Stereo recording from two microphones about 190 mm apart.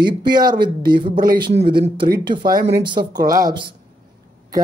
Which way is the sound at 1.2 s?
55° right (ahead or behind).